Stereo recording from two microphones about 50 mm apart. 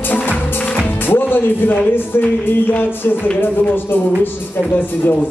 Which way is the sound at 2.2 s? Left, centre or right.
Left.